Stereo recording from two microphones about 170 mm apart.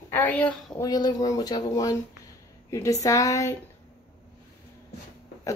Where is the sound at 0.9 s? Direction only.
20° left (ahead or behind).